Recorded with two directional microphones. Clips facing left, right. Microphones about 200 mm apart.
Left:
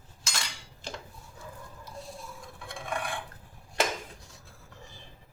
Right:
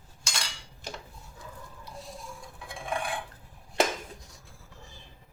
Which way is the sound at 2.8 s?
30° right (ahead or behind).